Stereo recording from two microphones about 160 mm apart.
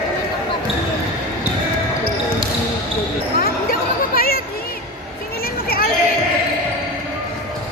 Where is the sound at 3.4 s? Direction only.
65° left (ahead or behind).